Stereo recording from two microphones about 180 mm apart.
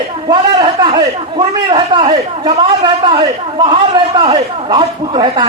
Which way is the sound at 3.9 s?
25° right (ahead or behind).